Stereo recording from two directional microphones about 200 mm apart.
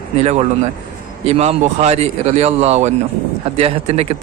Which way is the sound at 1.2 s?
30° right (ahead or behind).